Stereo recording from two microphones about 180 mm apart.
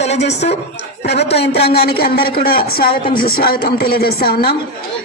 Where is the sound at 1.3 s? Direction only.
65° left (ahead or behind).